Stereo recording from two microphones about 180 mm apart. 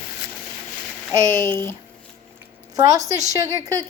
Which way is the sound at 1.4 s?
15° left (ahead or behind).